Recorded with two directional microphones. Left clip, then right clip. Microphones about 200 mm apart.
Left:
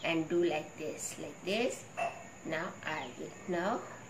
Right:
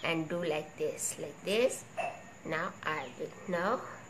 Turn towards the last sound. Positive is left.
turn(degrees=-55)  # may be behind; listen again after turning